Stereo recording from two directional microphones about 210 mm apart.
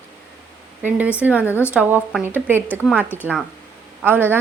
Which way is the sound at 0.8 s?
10° right (ahead or behind).